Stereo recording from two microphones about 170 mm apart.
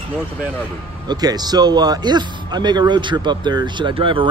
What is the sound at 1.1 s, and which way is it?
A man's voice, 25° right (ahead or behind).